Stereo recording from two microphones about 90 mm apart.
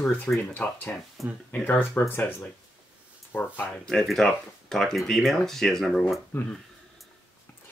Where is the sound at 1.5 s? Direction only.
15° left (ahead or behind).